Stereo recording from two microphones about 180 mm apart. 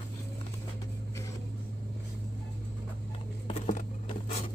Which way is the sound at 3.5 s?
40° left (ahead or behind).